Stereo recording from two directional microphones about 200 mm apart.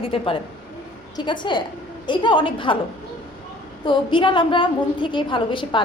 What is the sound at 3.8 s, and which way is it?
A woman's voice, 25° left (ahead or behind).